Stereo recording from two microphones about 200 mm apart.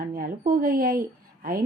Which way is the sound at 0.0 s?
40° right (ahead or behind).